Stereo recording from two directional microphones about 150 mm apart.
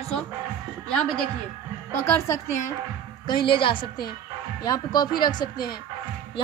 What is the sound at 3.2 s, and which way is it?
Speech, 35° left (ahead or behind).